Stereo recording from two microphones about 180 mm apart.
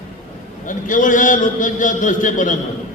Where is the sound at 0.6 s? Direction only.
45° left (ahead or behind).